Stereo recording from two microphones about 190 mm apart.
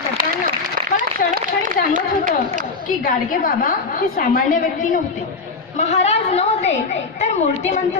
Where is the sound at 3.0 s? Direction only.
45° left (ahead or behind).